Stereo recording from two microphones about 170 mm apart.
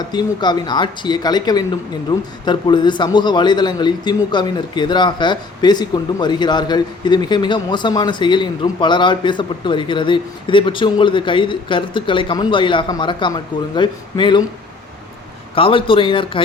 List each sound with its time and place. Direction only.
0.1 s a man's voice: 25° left (ahead or behind)
15.5 s speech: 30° left (ahead or behind)